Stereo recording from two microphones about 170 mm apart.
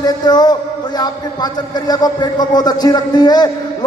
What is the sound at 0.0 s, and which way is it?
A man's voice, 25° left (ahead or behind).